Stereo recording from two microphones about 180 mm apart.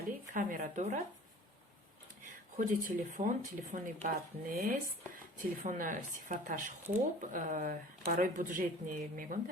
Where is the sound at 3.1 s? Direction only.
45° right (ahead or behind).